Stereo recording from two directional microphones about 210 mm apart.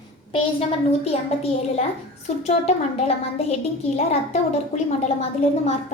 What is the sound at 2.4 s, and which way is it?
Speech, 30° left (ahead or behind).